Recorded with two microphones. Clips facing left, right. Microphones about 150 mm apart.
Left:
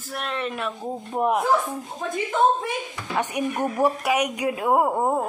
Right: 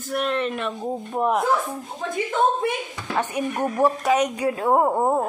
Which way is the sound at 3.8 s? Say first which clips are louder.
Right 3 dB; 10° left (ahead or behind).